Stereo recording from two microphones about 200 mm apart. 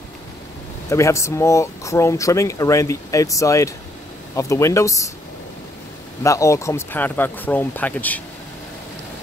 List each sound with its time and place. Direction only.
0.8 s speech: 15° left (ahead or behind)
6.2 s speech: 15° left (ahead or behind)